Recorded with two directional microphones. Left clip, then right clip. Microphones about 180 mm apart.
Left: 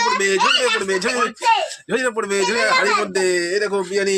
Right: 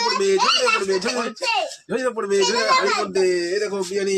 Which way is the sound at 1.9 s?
15° left (ahead or behind).